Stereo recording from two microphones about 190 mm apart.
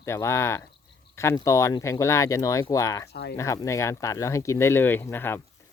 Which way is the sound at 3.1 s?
60° left (ahead or behind).